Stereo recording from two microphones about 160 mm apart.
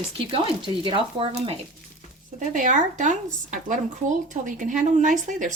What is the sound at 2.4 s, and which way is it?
Speech, 50° right (ahead or behind).